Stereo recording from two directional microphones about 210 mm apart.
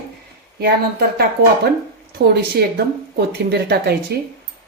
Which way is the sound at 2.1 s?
50° right (ahead or behind).